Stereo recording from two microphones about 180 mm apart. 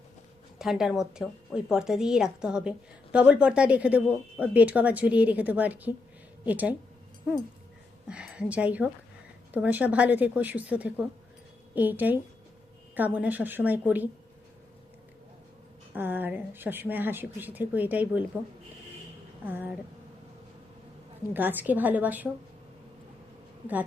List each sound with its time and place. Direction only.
0.6 s a woman's voice: centre (ahead or behind)
8.0 s a woman's voice: 5° right (ahead or behind)
16.0 s a woman's voice: 10° right (ahead or behind)
19.5 s a woman's voice: 10° right (ahead or behind)
21.3 s a woman's voice: 10° right (ahead or behind)